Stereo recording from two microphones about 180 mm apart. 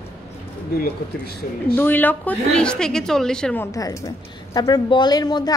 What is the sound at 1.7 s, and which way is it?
A woman's voice, 10° left (ahead or behind).